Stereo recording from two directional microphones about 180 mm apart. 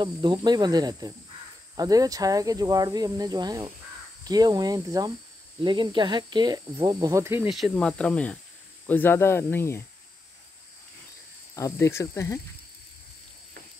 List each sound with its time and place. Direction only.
0.0 s speech: 25° right (ahead or behind)
7.4 s cricket: centre (ahead or behind)
8.8 s speech: 10° left (ahead or behind)
11.5 s speech: 15° left (ahead or behind)